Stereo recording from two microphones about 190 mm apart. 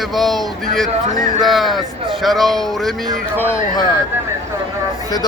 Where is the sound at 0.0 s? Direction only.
Centre (ahead or behind).